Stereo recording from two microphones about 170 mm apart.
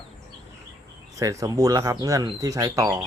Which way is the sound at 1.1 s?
20° right (ahead or behind).